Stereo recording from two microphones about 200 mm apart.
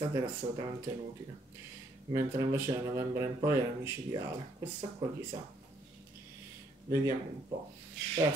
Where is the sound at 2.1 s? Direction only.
15° right (ahead or behind).